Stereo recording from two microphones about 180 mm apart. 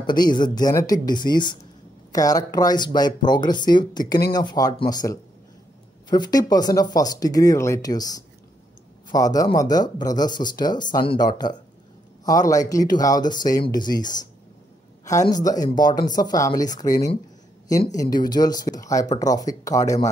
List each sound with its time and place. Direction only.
0.0 s speech: 25° left (ahead or behind)
15.0 s a man's voice: 15° left (ahead or behind)